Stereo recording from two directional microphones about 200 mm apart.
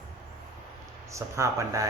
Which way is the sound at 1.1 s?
15° right (ahead or behind).